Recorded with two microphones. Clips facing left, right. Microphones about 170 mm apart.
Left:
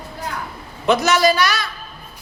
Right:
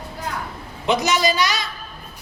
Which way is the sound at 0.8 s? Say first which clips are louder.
Left 4 dB; 15° right (ahead or behind).